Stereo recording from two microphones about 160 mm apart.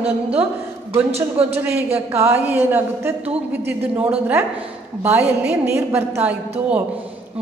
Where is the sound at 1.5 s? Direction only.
10° right (ahead or behind).